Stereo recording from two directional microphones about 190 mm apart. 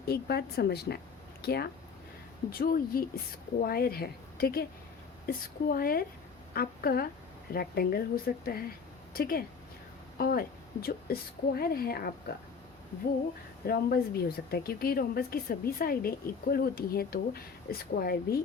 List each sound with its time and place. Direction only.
0.0 s a woman's voice: 55° left (ahead or behind)
13.7 s a woman's voice: 55° left (ahead or behind)